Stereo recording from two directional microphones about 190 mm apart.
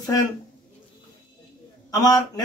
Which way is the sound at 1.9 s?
20° left (ahead or behind).